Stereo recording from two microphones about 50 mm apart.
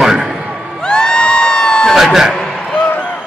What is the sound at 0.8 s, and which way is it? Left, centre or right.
Crowd, centre.